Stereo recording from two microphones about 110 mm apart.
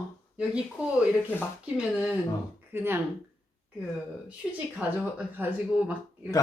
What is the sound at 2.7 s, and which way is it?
Speech, 20° right (ahead or behind).